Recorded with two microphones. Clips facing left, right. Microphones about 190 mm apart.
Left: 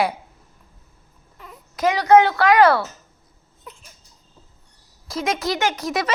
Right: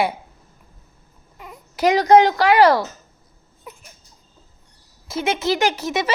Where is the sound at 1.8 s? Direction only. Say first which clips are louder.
Right 1 dB; 35° right (ahead or behind).